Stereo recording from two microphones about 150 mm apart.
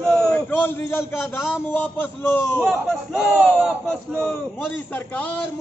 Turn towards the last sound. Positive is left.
turn(degrees=0)  # may be behind; listen again after turning